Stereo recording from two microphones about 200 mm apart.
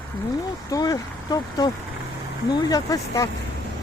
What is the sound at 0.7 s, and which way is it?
Speech, 20° left (ahead or behind).